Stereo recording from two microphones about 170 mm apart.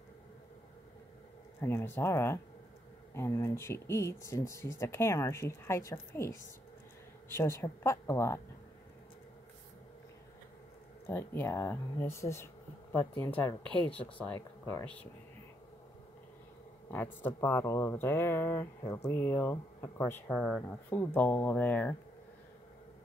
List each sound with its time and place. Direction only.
1.6 s speech: 15° left (ahead or behind)
11.1 s speech: 10° left (ahead or behind)
13.7 s speech: 5° left (ahead or behind)
16.9 s speech: 15° left (ahead or behind)